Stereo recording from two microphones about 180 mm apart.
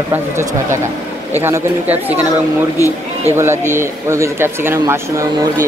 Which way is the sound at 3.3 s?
15° right (ahead or behind).